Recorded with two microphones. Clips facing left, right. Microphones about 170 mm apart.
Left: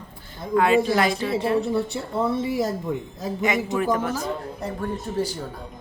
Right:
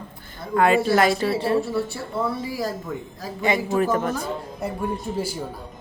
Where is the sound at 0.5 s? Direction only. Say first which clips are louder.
Right 1 dB; 45° right (ahead or behind).